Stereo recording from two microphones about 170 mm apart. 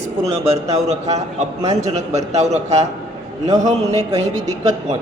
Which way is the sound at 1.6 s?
20° right (ahead or behind).